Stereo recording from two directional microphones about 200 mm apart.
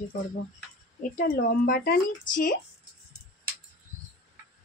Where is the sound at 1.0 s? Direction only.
40° left (ahead or behind).